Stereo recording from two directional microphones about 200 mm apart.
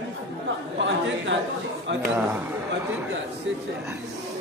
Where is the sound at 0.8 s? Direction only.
65° right (ahead or behind).